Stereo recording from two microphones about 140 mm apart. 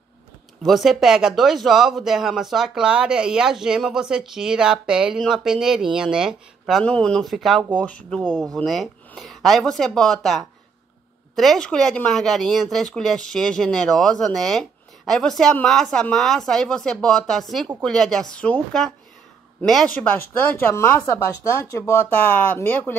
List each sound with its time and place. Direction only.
0.6 s speech: centre (ahead or behind)
6.8 s speech: 5° left (ahead or behind)
20.6 s speech: 20° left (ahead or behind)